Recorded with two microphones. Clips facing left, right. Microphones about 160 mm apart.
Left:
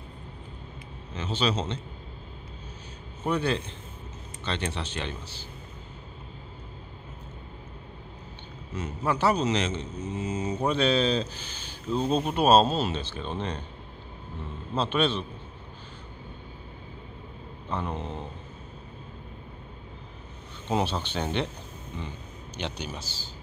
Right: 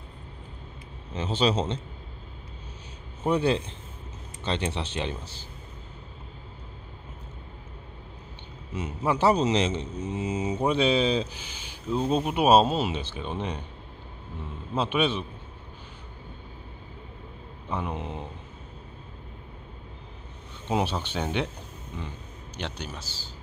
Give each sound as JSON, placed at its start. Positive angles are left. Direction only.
{"t": 1.1, "sound": "a man's voice", "side_deg": -30}
{"t": 3.3, "sound": "a man's voice", "side_deg": -30}
{"t": 8.7, "sound": "a man's voice", "side_deg": -15}
{"t": 10.1, "sound": "speech", "side_deg": -15}
{"t": 14.7, "sound": "speech", "side_deg": -10}
{"t": 17.6, "sound": "speech", "side_deg": -10}
{"t": 20.6, "sound": "speech", "side_deg": -10}
{"t": 22.6, "sound": "a man's voice", "side_deg": 5}